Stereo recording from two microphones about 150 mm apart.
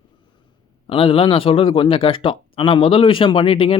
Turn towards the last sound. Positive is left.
turn(degrees=35)  # may be behind; listen again after turning